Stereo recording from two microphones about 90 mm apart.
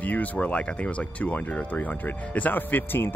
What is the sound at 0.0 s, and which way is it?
Speech, 15° left (ahead or behind).